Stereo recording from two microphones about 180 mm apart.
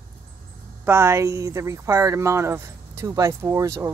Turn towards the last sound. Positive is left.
turn(degrees=-15)  # may be behind; listen again after turning